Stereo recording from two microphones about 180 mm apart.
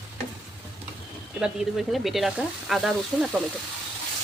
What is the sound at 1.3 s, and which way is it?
Speech, 5° right (ahead or behind).